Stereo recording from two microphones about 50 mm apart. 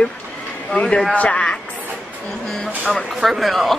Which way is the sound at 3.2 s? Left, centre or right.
Centre.